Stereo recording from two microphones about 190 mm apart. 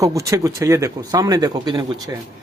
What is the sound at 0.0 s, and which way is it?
A man's voice, 15° right (ahead or behind).